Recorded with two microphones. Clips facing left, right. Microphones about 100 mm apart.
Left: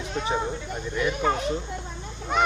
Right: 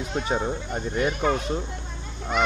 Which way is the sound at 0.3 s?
45° right (ahead or behind).